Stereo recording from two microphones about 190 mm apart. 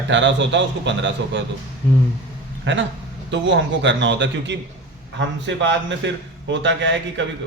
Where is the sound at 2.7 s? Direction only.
75° right (ahead or behind).